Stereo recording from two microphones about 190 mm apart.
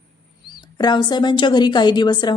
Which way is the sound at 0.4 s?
20° left (ahead or behind).